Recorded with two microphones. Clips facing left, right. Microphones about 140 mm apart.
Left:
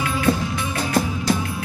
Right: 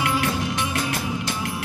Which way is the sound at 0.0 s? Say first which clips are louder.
Right 1 dB; 70° right (ahead or behind).